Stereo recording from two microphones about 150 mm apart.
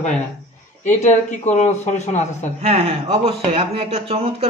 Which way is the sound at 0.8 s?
50° left (ahead or behind).